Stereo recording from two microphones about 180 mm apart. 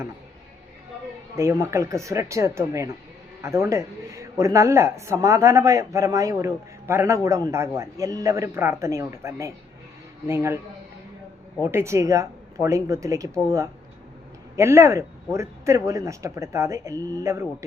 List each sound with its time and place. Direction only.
1.4 s speech: 15° right (ahead or behind)
11.6 s speech: 15° right (ahead or behind)
14.5 s speech: 15° right (ahead or behind)